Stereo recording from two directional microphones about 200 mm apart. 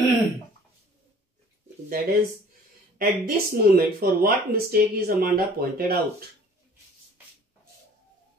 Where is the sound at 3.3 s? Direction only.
50° right (ahead or behind).